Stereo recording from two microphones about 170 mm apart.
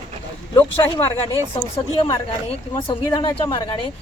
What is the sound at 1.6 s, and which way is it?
Speech, 20° left (ahead or behind).